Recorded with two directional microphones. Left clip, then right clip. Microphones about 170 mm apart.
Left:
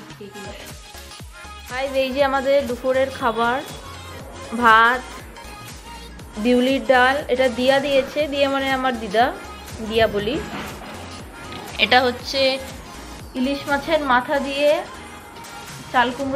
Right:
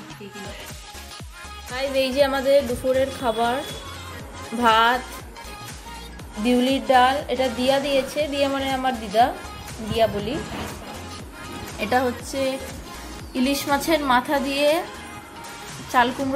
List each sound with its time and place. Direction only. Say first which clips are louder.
1.7 s a woman's voice: left 1 dB; 15° right (ahead or behind)
6.4 s a woman's voice: left 3 dB; 5° right (ahead or behind)
11.8 s a woman's voice: left 6 dB; 15° right (ahead or behind)
15.9 s a woman's voice: left 1 dB; 25° right (ahead or behind)